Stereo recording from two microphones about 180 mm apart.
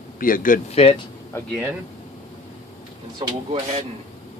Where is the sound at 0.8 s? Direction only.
35° left (ahead or behind).